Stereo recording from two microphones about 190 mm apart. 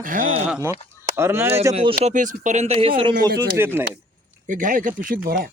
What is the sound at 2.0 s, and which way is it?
Speech, 40° right (ahead or behind).